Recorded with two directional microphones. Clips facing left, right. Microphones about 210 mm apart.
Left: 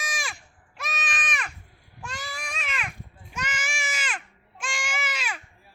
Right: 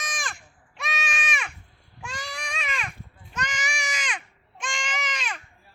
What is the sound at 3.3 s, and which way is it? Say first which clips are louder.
Baby cry: right 1 dB; 5° left (ahead or behind).